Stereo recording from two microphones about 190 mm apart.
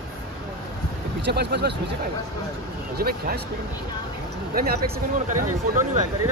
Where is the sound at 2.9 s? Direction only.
55° right (ahead or behind).